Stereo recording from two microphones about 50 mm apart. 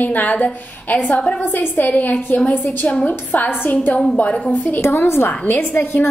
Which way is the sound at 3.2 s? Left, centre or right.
Left.